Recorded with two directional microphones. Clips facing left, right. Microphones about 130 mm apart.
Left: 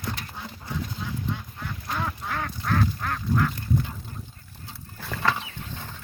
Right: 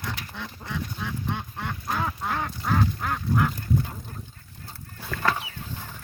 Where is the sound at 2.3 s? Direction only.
10° right (ahead or behind).